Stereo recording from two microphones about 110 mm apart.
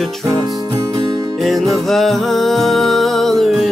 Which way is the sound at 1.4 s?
Centre (ahead or behind).